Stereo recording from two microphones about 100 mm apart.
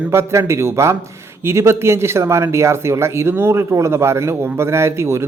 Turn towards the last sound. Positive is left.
turn(degrees=-25)  # may be behind; listen again after turning